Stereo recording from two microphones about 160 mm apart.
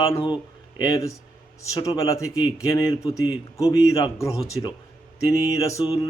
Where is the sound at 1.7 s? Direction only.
20° left (ahead or behind).